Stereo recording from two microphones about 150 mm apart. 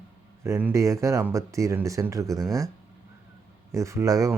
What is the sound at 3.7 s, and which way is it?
Speech, 20° right (ahead or behind).